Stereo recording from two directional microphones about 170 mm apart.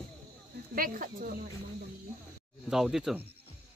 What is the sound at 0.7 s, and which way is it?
Speech, 55° right (ahead or behind).